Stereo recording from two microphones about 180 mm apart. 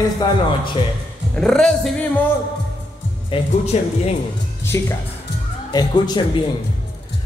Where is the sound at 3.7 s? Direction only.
40° left (ahead or behind).